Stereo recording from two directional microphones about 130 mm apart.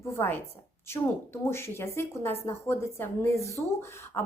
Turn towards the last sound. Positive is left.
turn(degrees=20)  # may be behind; listen again after turning